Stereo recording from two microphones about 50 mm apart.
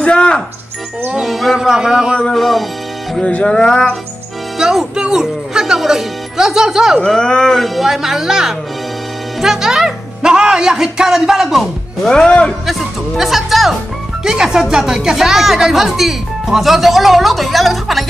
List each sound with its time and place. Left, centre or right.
0.0 s music: left
1.2 s speech: centre
2.3 s speech: centre
3.3 s music: left
3.5 s speech: centre
4.6 s speech: centre
7.1 s speech: centre
7.5 s speech: centre
12.3 s speech: left
12.6 s speech: centre